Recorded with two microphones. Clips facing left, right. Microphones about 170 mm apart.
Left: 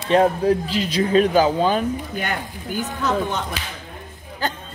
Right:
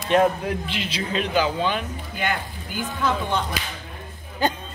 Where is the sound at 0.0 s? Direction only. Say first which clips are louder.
Left 3 dB; 30° left (ahead or behind).